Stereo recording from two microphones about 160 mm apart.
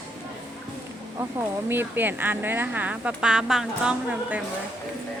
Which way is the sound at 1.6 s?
15° right (ahead or behind).